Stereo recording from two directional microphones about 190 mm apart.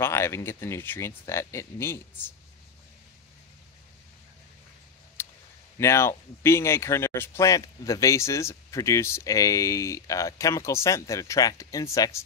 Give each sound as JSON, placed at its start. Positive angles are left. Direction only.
{"t": 0.0, "sound": "speech", "side_deg": 15}
{"t": 5.2, "sound": "clicking", "side_deg": 10}
{"t": 5.8, "sound": "speech", "side_deg": 15}